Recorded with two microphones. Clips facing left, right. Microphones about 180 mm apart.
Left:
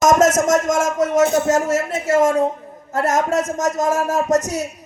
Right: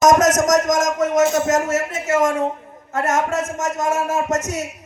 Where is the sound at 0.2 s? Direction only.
30° left (ahead or behind).